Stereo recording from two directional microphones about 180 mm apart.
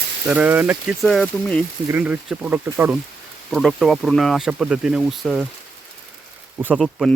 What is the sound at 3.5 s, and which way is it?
Speech, centre (ahead or behind).